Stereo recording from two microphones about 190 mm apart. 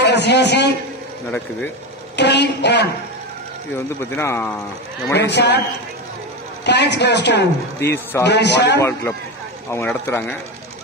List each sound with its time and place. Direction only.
0.0 s a man's voice: 65° left (ahead or behind)
2.1 s a sound: 65° left (ahead or behind)
3.7 s speech: 10° left (ahead or behind)
5.1 s a man's voice: 65° left (ahead or behind)
6.6 s a man's voice: 65° left (ahead or behind)
7.8 s speech: 15° left (ahead or behind)
8.3 s a man's voice: 65° left (ahead or behind)
9.7 s speech: 15° left (ahead or behind)